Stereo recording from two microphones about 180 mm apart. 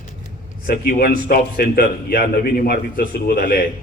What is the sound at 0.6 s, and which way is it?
A man's voice, 60° left (ahead or behind).